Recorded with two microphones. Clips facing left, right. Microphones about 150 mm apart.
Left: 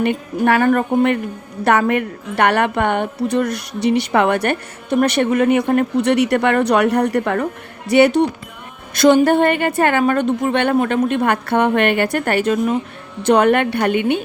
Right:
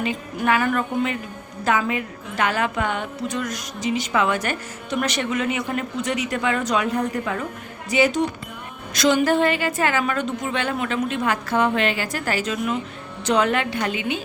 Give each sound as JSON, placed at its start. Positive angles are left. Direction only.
{"t": 0.0, "sound": "a woman's voice", "side_deg": 60}
{"t": 1.6, "sound": "a woman's voice", "side_deg": 65}